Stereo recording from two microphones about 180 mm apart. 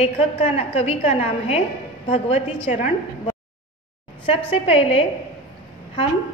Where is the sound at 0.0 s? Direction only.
35° left (ahead or behind).